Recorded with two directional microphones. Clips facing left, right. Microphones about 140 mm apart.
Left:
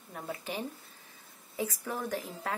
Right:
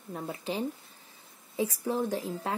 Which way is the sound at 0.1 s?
30° right (ahead or behind).